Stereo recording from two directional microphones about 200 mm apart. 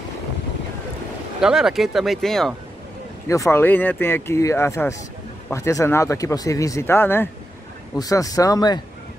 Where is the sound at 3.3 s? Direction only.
15° left (ahead or behind).